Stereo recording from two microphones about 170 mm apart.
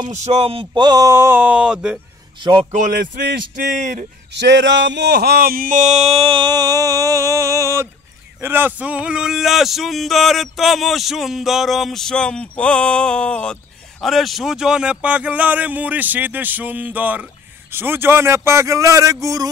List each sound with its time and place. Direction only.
0.1 s speech: 40° right (ahead or behind); by 2.0 s 5° right (ahead or behind)
2.7 s speech: 55° right (ahead or behind)
4.3 s speech: 90° right; by 19.1 s 20° right (ahead or behind)